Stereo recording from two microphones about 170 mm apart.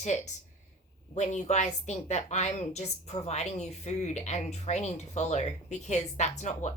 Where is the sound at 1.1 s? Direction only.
45° left (ahead or behind).